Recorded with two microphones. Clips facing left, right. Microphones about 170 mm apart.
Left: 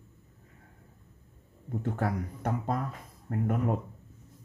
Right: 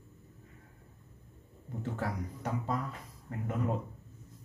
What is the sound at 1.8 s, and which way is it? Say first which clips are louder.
Speech: left 4 dB; 55° left (ahead or behind).